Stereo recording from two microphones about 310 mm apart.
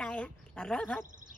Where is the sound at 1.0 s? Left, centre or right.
Right.